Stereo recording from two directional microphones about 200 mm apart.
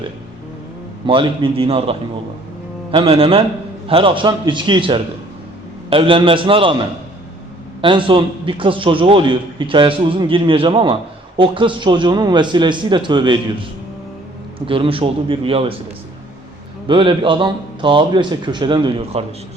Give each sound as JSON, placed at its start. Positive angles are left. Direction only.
{"t": 1.0, "sound": "a man's voice", "side_deg": -25}
{"t": 14.7, "sound": "a man's voice", "side_deg": -25}
{"t": 16.8, "sound": "a man's voice", "side_deg": -25}